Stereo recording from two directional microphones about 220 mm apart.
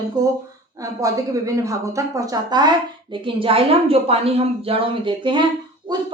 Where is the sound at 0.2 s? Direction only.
15° right (ahead or behind).